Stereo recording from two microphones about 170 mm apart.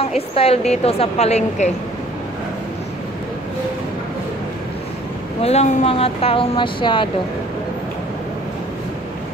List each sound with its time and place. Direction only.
0.4 s speech: 35° left (ahead or behind)
5.4 s speech: 40° left (ahead or behind)